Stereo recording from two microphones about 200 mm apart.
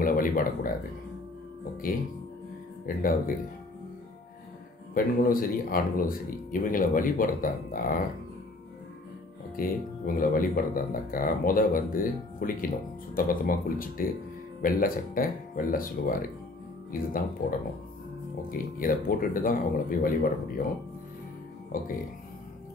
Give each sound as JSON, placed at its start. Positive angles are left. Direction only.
{"t": 0.0, "sound": "speech", "side_deg": 45}
{"t": 3.0, "sound": "speech", "side_deg": 45}
{"t": 4.9, "sound": "speech", "side_deg": 45}
{"t": 9.6, "sound": "speech", "side_deg": 45}
{"t": 21.7, "sound": "speech", "side_deg": 45}